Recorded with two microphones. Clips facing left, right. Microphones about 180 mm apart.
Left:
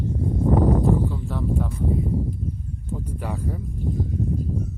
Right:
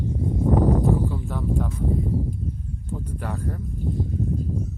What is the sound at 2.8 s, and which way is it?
Speech, 10° left (ahead or behind).